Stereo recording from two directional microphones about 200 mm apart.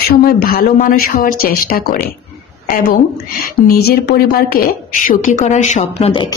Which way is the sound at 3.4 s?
45° left (ahead or behind).